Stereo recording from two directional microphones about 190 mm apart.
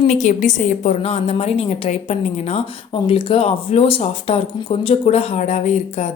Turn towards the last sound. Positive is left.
turn(degrees=35)  # may be behind; listen again after turning